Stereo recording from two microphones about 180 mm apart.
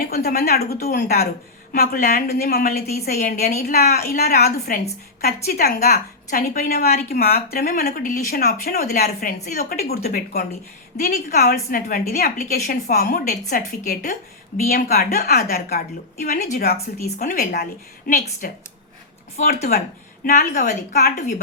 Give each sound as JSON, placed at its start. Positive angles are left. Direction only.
{"t": 0.0, "sound": "a woman's voice", "side_deg": 60}
{"t": 2.0, "sound": "a woman's voice", "side_deg": 45}
{"t": 3.4, "sound": "speech", "side_deg": 40}
{"t": 3.8, "sound": "a woman's voice", "side_deg": 60}
{"t": 11.0, "sound": "a woman's voice", "side_deg": 40}
{"t": 13.0, "sound": "a woman's voice", "side_deg": 45}
{"t": 20.2, "sound": "a woman's voice", "side_deg": 45}